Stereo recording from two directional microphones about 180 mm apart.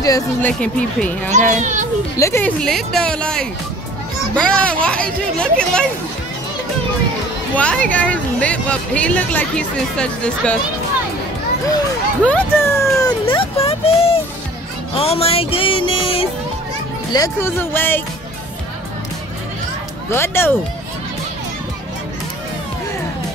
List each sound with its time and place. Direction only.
0.0 s speech: 15° left (ahead or behind)
1.3 s a child's voice: 40° right (ahead or behind)
2.1 s speech: 15° left (ahead or behind)
7.5 s speech: 5° left (ahead or behind)
12.3 s speech: 10° left (ahead or behind)
13.0 s speech: 30° left (ahead or behind)
15.0 s music: 35° left (ahead or behind)
17.1 s speech: 15° left (ahead or behind)
20.1 s speech: 15° left (ahead or behind)